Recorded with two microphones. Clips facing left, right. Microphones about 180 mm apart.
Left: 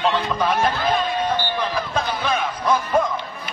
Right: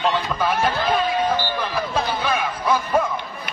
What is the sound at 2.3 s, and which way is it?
Speech, 10° right (ahead or behind).